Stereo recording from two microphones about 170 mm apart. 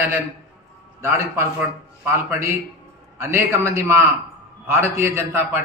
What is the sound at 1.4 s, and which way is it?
Speech, 15° right (ahead or behind).